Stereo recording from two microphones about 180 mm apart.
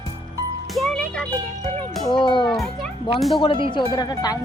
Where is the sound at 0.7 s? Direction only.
5° left (ahead or behind).